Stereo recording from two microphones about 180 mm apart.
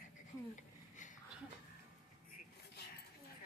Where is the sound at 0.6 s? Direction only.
45° left (ahead or behind).